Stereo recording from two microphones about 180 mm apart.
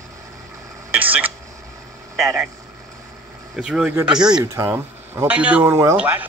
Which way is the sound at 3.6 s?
5° right (ahead or behind).